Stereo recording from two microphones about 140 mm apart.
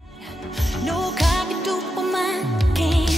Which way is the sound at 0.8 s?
Centre (ahead or behind).